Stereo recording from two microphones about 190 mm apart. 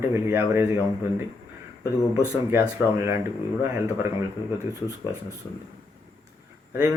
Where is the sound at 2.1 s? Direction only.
15° right (ahead or behind).